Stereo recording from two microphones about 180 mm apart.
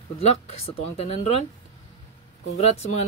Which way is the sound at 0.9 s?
35° left (ahead or behind).